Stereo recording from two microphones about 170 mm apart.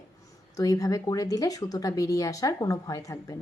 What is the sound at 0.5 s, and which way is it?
Speech, 20° left (ahead or behind).